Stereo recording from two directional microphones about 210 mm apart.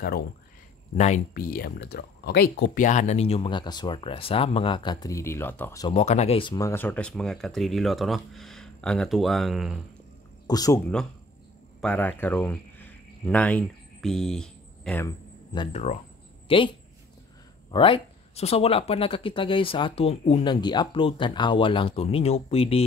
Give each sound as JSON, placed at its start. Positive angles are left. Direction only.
{"t": 0.9, "sound": "speech", "side_deg": 35}
{"t": 2.8, "sound": "speech", "side_deg": 35}
{"t": 5.9, "sound": "speech", "side_deg": 30}
{"t": 10.4, "sound": "speech", "side_deg": 20}
{"t": 11.8, "sound": "speech", "side_deg": 5}
{"t": 15.0, "sound": "speech", "side_deg": 20}